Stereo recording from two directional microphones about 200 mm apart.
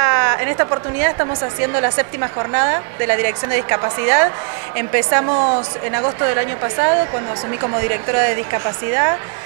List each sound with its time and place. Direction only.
0.0 s a woman's voice: 20° right (ahead or behind)